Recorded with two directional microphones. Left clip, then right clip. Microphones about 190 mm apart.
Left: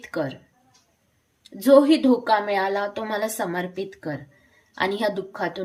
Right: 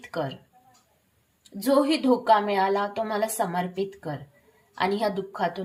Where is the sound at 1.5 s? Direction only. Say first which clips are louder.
Left 7 dB; 20° left (ahead or behind).